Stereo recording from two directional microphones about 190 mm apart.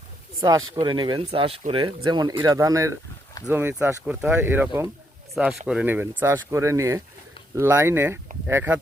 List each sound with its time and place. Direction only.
0.7 s speech: 20° right (ahead or behind)